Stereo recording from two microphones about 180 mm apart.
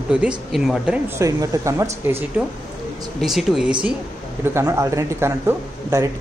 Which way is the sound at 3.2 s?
Centre (ahead or behind).